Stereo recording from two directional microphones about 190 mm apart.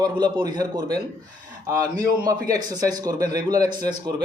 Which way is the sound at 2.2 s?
20° right (ahead or behind).